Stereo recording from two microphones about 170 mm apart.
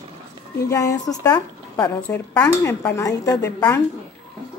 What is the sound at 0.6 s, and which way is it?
Speech, 20° left (ahead or behind).